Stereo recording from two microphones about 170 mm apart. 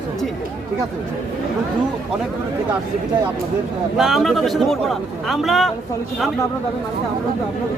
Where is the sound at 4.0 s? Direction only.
Centre (ahead or behind).